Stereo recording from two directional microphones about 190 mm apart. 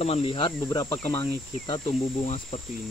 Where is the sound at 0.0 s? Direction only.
30° left (ahead or behind).